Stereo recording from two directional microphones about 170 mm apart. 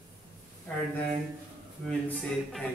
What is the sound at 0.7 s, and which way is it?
Speech, 10° left (ahead or behind).